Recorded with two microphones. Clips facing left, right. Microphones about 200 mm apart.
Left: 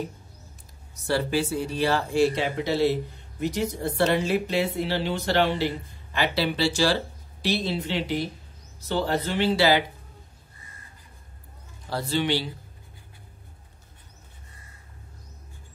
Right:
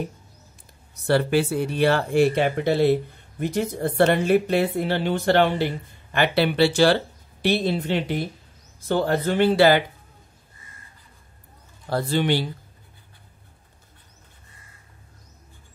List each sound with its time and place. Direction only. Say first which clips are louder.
1.0 s speech: right 5 dB; 60° right (ahead or behind)
11.9 s speech: right 3 dB; 50° right (ahead or behind)